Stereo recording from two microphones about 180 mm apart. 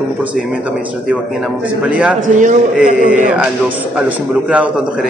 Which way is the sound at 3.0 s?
45° right (ahead or behind).